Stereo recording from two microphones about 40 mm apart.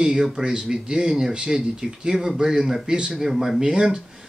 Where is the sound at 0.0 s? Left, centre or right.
Centre.